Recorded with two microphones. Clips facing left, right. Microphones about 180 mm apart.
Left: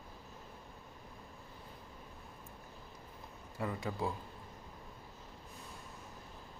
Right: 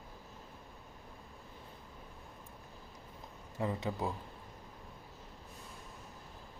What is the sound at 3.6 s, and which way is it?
Speech, 20° right (ahead or behind).